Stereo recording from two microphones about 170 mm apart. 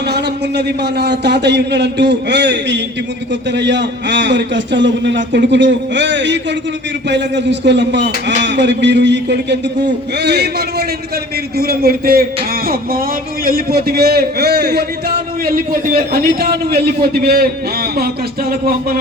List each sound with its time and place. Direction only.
0.1 s a man's voice: 75° right (ahead or behind)
13.4 s a man's voice: 60° right (ahead or behind)